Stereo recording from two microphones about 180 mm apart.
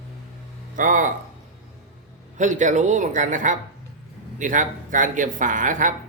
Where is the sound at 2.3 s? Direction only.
45° right (ahead or behind).